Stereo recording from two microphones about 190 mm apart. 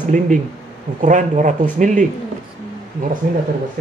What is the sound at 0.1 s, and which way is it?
A man's voice, 45° right (ahead or behind).